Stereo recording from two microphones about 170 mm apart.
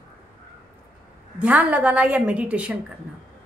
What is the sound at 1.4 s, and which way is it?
A woman's voice, 10° right (ahead or behind).